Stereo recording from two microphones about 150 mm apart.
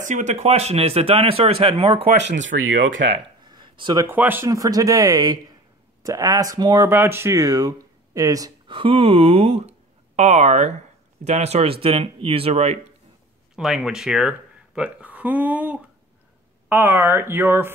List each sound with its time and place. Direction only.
0.0 s speech: 55° right (ahead or behind)
2.5 s speech: 90° right
3.4 s a sound: 30° right (ahead or behind)
4.1 s speech: 15° right (ahead or behind)
4.5 s speech: 25° right (ahead or behind); by 12.7 s 40° right (ahead or behind)
13.6 s speech: centre (ahead or behind)